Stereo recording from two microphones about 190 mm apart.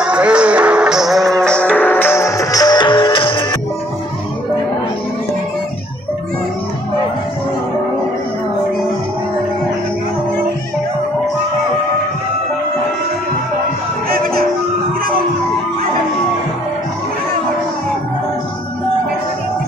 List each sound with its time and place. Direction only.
0.0 s music: 5° right (ahead or behind); by 3.4 s 25° left (ahead or behind)
14.0 s music: 50° right (ahead or behind)